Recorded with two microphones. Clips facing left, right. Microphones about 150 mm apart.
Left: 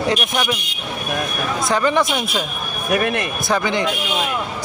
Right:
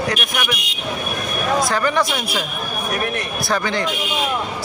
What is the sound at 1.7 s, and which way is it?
Speech, 20° left (ahead or behind).